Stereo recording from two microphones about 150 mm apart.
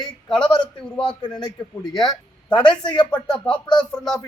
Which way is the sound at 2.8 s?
30° left (ahead or behind).